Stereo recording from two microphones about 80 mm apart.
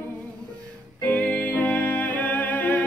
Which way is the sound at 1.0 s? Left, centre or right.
Left.